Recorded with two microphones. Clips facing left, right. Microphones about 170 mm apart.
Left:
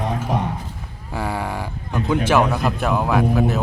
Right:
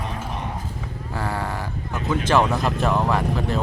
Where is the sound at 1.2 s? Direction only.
10° left (ahead or behind).